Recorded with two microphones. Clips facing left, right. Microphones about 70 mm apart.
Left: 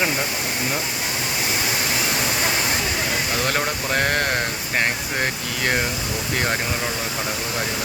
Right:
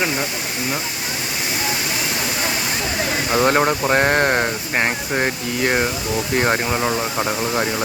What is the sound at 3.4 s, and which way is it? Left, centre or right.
Speech, right.